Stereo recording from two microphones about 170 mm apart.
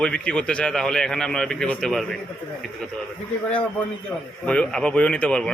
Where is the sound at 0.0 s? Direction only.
5° left (ahead or behind).